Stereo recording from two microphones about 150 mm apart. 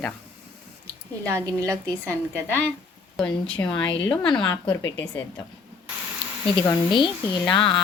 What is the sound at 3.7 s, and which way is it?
Speech, 30° left (ahead or behind).